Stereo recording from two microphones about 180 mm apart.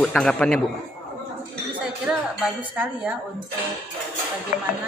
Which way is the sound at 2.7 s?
10° right (ahead or behind).